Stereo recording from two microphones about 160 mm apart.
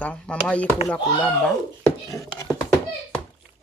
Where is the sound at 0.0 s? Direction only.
10° left (ahead or behind).